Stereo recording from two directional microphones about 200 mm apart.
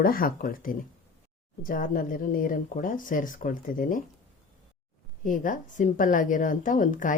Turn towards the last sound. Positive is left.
turn(degrees=40)  # may be behind; listen again after turning